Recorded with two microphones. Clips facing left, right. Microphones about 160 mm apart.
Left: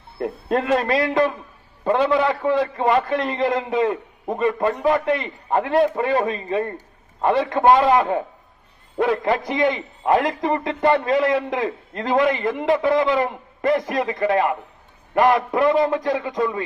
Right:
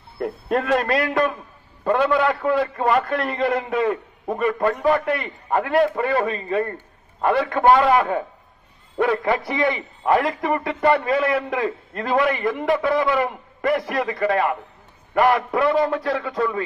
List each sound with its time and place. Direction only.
0.2 s a man's voice: 20° left (ahead or behind)